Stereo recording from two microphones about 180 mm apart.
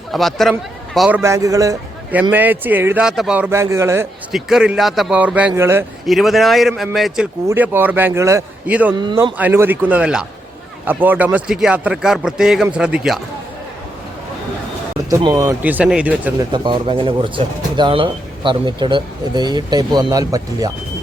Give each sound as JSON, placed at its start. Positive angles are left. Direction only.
{"t": 0.1, "sound": "speech", "side_deg": 0}
{"t": 1.2, "sound": "a man's voice", "side_deg": -15}
{"t": 4.3, "sound": "speech", "side_deg": 0}
{"t": 6.1, "sound": "a man's voice", "side_deg": 0}
{"t": 15.1, "sound": "a man's voice", "side_deg": -20}
{"t": 16.5, "sound": "speech", "side_deg": -25}